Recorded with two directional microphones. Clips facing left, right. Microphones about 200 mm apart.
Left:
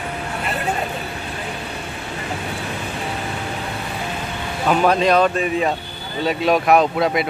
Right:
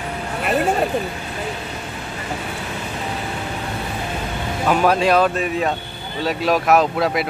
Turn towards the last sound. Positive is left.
turn(degrees=0)  # may be behind; listen again after turning